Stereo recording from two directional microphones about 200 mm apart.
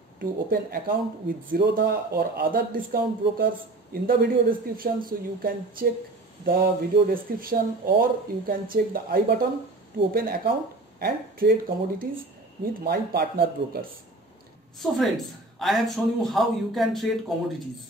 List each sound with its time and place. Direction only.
0.2 s speech: 45° right (ahead or behind)
14.8 s speech: centre (ahead or behind)